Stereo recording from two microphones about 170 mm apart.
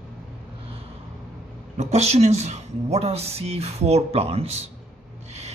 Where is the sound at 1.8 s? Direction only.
40° right (ahead or behind).